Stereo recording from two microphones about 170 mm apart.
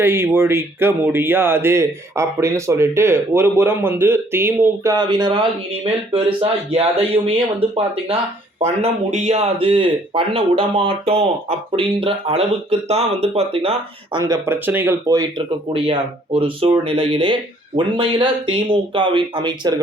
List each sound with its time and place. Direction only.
0.0 s speech: 15° right (ahead or behind)
15.7 s speech: 30° right (ahead or behind)